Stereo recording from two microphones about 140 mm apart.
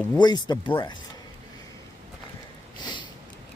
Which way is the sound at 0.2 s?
30° left (ahead or behind).